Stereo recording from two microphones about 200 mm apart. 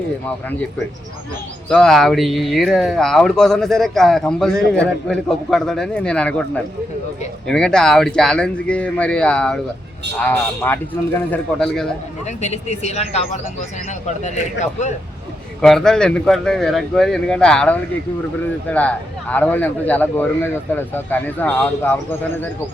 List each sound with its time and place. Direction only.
1.7 s speech: centre (ahead or behind)
7.4 s speech: 5° left (ahead or behind)
12.2 s speech: 35° left (ahead or behind)
15.6 s speech: centre (ahead or behind)